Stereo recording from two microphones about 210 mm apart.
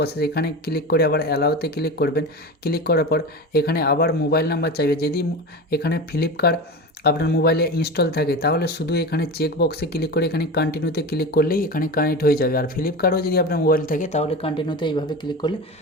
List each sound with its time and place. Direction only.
0.0 s speech: 50° left (ahead or behind); by 15.5 s 20° left (ahead or behind)